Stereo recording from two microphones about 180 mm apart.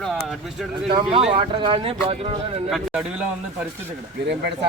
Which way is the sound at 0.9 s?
30° right (ahead or behind).